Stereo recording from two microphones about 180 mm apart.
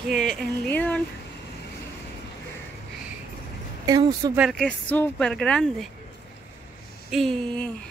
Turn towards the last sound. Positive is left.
turn(degrees=5)  # may be behind; listen again after turning